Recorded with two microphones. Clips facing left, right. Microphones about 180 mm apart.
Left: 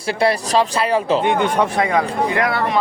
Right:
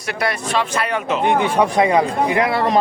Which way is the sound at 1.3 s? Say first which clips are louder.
Right 1 dB; 5° right (ahead or behind).